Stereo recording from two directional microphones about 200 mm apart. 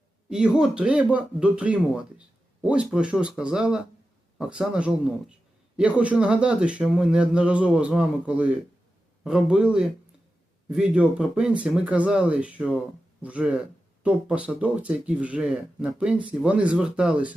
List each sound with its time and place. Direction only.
0.3 s speech: 5° right (ahead or behind)